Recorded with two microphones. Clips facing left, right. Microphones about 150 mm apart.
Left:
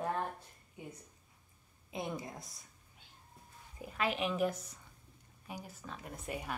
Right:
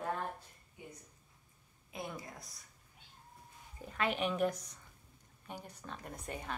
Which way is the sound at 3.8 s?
5° left (ahead or behind).